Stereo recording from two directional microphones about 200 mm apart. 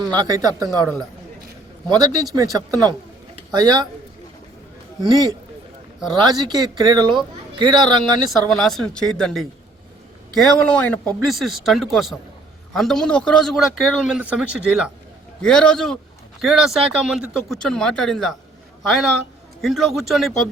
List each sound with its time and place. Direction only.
0.0 s speech: 20° right (ahead or behind)
1.9 s speech: 20° right (ahead or behind)
5.0 s speech: 20° right (ahead or behind)
8.4 s a man's voice: centre (ahead or behind)